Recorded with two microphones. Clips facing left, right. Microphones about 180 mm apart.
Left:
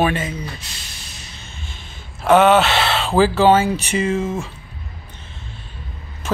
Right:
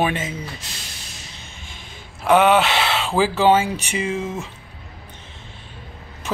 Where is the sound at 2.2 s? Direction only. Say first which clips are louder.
Left 2 dB; 10° right (ahead or behind).